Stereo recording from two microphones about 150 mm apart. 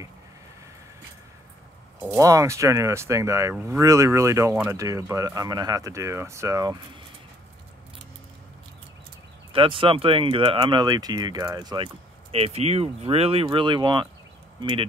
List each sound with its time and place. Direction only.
2.0 s speech: 20° right (ahead or behind)
9.5 s speech: 35° right (ahead or behind)